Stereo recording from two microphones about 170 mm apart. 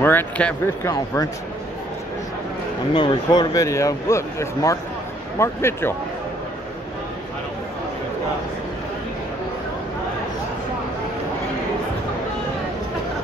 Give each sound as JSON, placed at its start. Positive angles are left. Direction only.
{"t": 0.0, "sound": "speech", "side_deg": 10}
{"t": 2.9, "sound": "speech", "side_deg": 25}